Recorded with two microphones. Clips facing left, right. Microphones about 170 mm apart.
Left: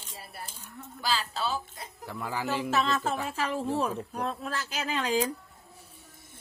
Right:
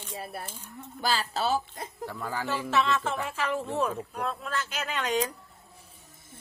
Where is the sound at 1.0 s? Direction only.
45° right (ahead or behind).